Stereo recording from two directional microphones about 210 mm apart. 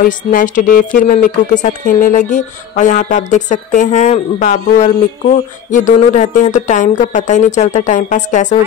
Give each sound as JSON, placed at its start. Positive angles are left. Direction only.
{"t": 0.0, "sound": "speech", "side_deg": 40}